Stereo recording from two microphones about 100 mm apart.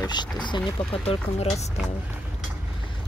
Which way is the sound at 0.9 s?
70° left (ahead or behind).